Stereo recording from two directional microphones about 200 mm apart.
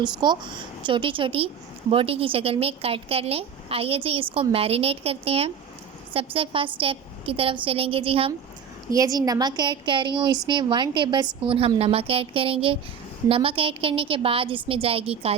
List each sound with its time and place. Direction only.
0.0 s speech: 20° right (ahead or behind)
8.9 s speech: 15° right (ahead or behind)